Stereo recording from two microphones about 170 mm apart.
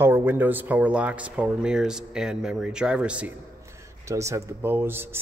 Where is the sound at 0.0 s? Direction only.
15° right (ahead or behind).